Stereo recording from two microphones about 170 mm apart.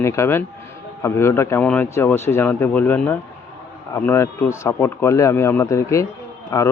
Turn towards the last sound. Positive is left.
turn(degrees=20)  # may be behind; listen again after turning